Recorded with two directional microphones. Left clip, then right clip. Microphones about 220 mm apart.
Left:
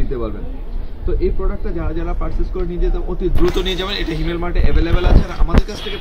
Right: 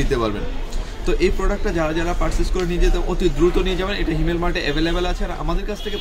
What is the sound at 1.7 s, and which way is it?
Speech, 35° right (ahead or behind).